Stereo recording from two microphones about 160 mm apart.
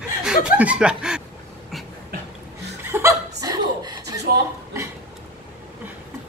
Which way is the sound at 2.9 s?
20° right (ahead or behind).